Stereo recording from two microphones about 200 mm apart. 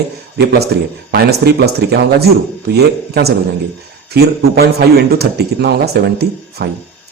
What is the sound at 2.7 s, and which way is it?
A man's voice, 55° right (ahead or behind).